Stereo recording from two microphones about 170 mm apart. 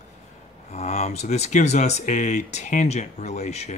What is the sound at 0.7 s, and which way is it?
Speech, 40° left (ahead or behind).